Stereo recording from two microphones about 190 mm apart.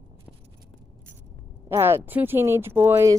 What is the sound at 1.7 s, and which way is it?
Speech, 10° right (ahead or behind).